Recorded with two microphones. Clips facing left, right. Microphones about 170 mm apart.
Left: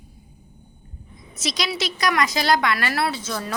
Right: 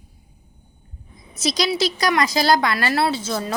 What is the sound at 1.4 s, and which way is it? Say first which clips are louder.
A woman's voice: right 6 dB; 35° right (ahead or behind).